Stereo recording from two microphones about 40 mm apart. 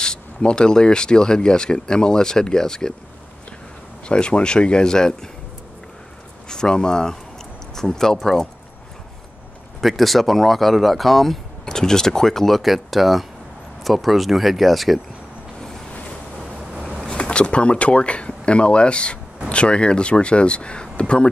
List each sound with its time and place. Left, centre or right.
0.0 s speech: left
4.1 s speech: left
6.5 s speech: centre
9.8 s speech: centre
11.6 s speech: centre
16.3 s vehicle: right
17.0 s speech: left